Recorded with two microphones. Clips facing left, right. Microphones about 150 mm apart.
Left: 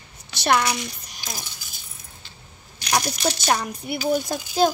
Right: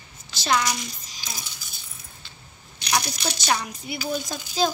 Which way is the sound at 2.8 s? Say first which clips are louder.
Left 3 dB; 50° left (ahead or behind).